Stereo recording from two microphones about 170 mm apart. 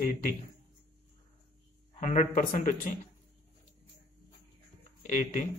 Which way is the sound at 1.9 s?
45° left (ahead or behind).